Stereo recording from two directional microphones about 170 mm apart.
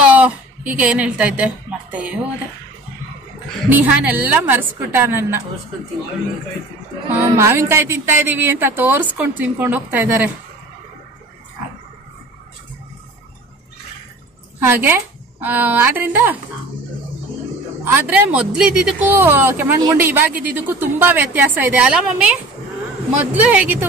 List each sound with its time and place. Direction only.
0.0 s a woman's voice: 10° right (ahead or behind)
3.7 s speech: 10° right (ahead or behind)
7.1 s speech: 15° right (ahead or behind)
14.6 s a woman's voice: 10° right (ahead or behind)
17.9 s speech: 10° right (ahead or behind)
23.3 s speech: 10° right (ahead or behind)